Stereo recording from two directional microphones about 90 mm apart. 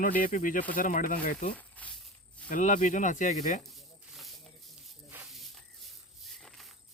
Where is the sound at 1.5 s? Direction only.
15° left (ahead or behind).